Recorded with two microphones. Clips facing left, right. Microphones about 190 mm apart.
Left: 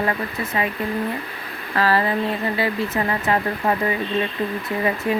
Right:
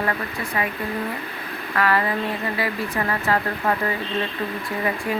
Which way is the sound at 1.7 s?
30° left (ahead or behind).